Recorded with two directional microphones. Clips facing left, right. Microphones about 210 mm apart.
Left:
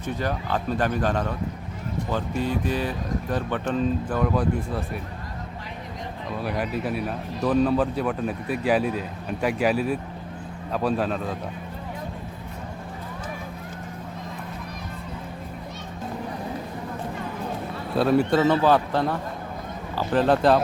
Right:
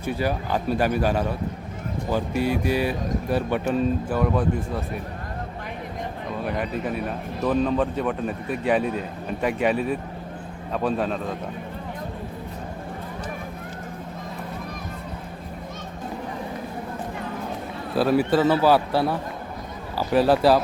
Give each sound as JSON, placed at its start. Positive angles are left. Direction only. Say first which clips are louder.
{"t": 0.0, "sound": "speech", "louder": "right 2 dB", "side_deg": -10}
{"t": 6.4, "sound": "speech", "louder": "even", "side_deg": 5}
{"t": 17.9, "sound": "speech", "louder": "even", "side_deg": 0}